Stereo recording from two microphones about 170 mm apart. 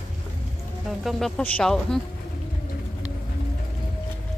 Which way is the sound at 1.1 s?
Centre (ahead or behind).